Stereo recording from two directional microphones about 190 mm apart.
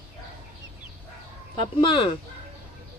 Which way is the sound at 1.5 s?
25° left (ahead or behind).